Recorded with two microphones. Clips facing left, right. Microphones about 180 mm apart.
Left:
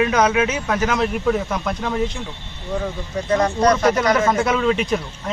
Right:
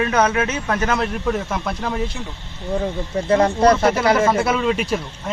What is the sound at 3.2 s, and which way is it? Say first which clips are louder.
Speech: right 2 dB; 30° right (ahead or behind).